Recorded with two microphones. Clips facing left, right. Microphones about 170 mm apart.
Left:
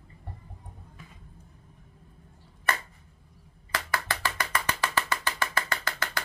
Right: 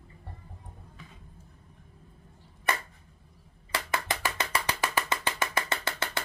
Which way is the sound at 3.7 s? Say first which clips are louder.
Even; 20° right (ahead or behind).